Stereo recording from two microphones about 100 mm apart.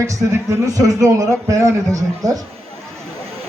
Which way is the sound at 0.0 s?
30° right (ahead or behind).